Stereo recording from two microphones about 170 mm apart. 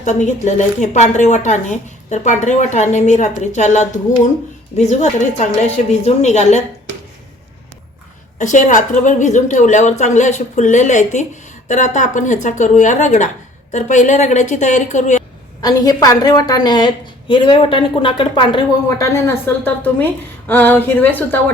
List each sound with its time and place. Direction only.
0.0 s a woman's voice: 45° left (ahead or behind)
8.4 s speech: 45° left (ahead or behind)
15.6 s a woman's voice: 20° left (ahead or behind)